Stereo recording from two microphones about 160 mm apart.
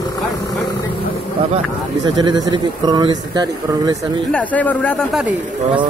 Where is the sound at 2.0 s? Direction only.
25° right (ahead or behind).